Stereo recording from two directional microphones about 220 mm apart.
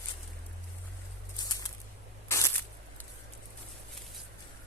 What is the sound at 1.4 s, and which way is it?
Bird, 15° left (ahead or behind).